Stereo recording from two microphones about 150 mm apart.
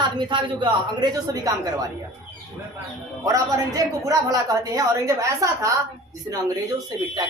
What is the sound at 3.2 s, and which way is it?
A man's voice, 20° right (ahead or behind).